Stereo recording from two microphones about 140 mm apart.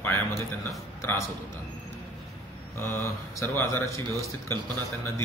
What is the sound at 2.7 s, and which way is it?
Speech, 15° left (ahead or behind).